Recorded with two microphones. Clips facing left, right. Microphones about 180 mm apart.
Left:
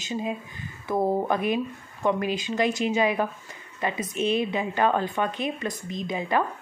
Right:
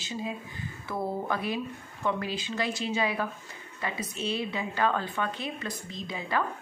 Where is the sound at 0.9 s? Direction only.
45° left (ahead or behind).